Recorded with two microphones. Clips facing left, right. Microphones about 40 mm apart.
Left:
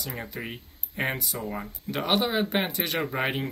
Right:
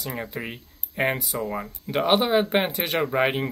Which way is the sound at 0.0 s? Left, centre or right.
Centre.